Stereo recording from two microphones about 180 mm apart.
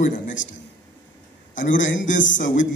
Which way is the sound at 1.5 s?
45° left (ahead or behind).